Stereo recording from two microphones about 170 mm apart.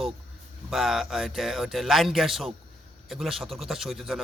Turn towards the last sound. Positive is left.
turn(degrees=0)  # may be behind; listen again after turning